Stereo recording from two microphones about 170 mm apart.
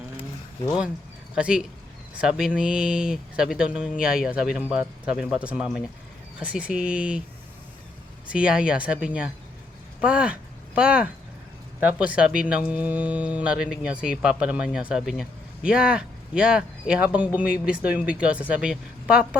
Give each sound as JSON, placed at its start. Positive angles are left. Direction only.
{"t": 0.2, "sound": "a sound", "side_deg": 10}
{"t": 1.4, "sound": "speech", "side_deg": -5}
{"t": 8.3, "sound": "speech", "side_deg": -5}